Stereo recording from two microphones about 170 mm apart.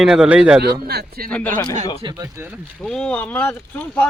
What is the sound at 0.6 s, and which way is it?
Speech, 70° right (ahead or behind).